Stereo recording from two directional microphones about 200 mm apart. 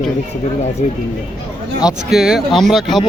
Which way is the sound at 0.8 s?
40° left (ahead or behind).